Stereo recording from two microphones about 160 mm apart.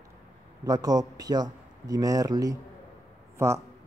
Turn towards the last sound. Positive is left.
turn(degrees=-15)  # may be behind; listen again after turning